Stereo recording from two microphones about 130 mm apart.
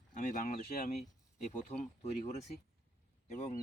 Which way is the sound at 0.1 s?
80° left.